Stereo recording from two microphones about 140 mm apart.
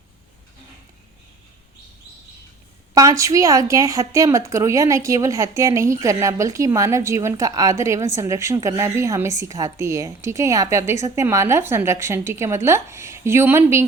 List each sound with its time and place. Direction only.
2.9 s a woman's voice: 25° right (ahead or behind)